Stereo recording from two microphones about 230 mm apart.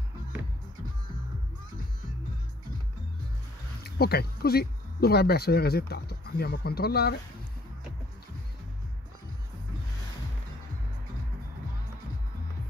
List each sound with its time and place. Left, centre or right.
3.8 s speech: left